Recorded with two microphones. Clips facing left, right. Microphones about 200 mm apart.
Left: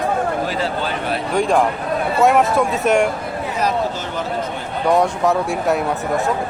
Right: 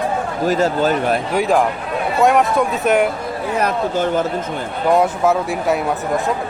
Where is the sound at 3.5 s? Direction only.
55° right (ahead or behind).